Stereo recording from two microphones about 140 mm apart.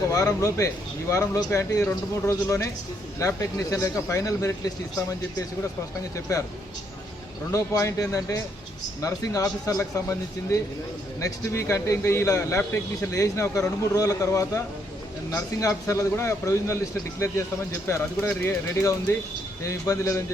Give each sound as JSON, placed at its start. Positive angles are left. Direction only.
{"t": 0.1, "sound": "a man's voice", "side_deg": 25}
{"t": 6.1, "sound": "a man's voice", "side_deg": 20}
{"t": 7.5, "sound": "a man's voice", "side_deg": 20}
{"t": 17.8, "sound": "a man's voice", "side_deg": 20}